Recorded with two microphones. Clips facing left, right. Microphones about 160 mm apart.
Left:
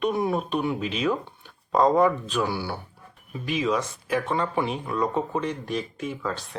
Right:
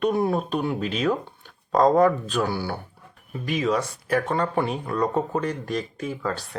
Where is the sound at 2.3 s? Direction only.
45° right (ahead or behind).